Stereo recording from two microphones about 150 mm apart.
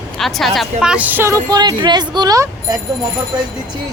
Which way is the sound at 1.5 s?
25° right (ahead or behind).